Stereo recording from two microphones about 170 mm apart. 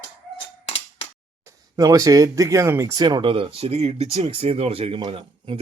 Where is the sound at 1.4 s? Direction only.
20° right (ahead or behind).